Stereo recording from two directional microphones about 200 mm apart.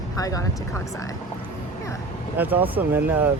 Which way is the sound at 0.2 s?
15° left (ahead or behind).